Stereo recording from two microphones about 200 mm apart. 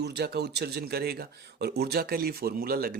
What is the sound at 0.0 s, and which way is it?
Speech, 55° right (ahead or behind).